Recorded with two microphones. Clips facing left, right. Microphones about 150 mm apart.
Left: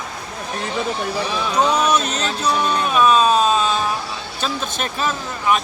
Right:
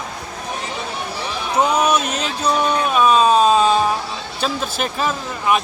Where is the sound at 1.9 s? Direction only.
10° right (ahead or behind).